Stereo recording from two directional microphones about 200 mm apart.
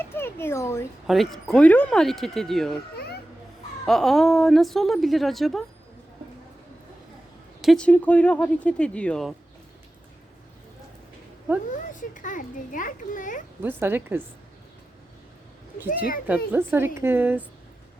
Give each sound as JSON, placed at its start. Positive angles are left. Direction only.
{"t": 0.0, "sound": "speech", "side_deg": 10}
{"t": 1.0, "sound": "a woman's voice", "side_deg": 0}
{"t": 3.8, "sound": "a woman's voice", "side_deg": 0}
{"t": 7.6, "sound": "a woman's voice", "side_deg": 5}
{"t": 11.7, "sound": "a child's voice", "side_deg": 40}
{"t": 13.6, "sound": "a woman's voice", "side_deg": -10}
{"t": 16.2, "sound": "a woman's voice", "side_deg": -10}